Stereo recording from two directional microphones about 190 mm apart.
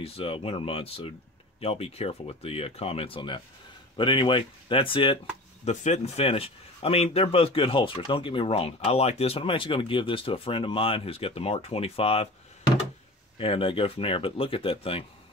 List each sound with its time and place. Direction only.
0.0 s speech: 30° left (ahead or behind)
13.4 s speech: 30° left (ahead or behind)